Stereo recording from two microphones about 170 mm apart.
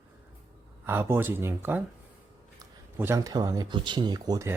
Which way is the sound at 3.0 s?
15° right (ahead or behind).